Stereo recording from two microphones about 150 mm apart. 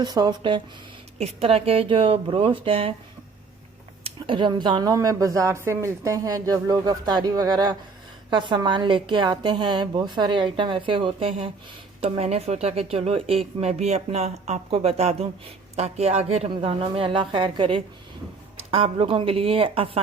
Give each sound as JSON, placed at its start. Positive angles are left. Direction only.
{"t": 0.0, "sound": "speech", "side_deg": -25}
{"t": 1.2, "sound": "a woman's voice", "side_deg": -40}
{"t": 4.0, "sound": "a woman's voice", "side_deg": -35}